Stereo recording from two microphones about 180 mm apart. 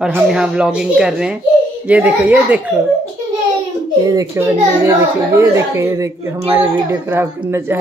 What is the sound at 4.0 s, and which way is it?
A child's voice, 20° right (ahead or behind).